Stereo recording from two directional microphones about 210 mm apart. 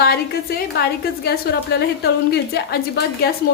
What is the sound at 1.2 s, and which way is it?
A woman's voice, 50° left (ahead or behind).